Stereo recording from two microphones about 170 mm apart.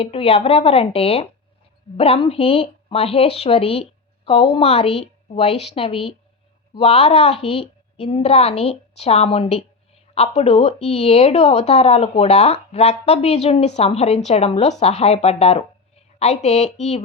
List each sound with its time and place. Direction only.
0.0 s speech: 35° left (ahead or behind)